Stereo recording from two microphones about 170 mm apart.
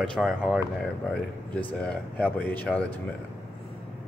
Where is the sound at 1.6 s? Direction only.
10° left (ahead or behind).